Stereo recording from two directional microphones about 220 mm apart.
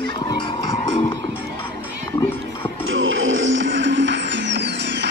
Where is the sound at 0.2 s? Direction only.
20° left (ahead or behind).